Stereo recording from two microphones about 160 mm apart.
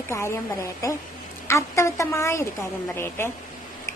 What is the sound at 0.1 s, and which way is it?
A woman's voice, 15° left (ahead or behind).